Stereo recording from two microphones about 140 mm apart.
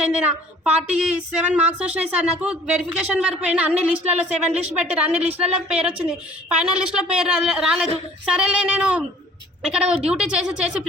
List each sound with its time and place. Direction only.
0.6 s speech: 5° right (ahead or behind)